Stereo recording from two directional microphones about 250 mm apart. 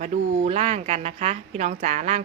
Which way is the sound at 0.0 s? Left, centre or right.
Right.